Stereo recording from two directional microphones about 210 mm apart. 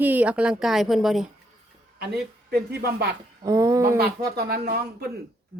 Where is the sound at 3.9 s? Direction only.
45° right (ahead or behind).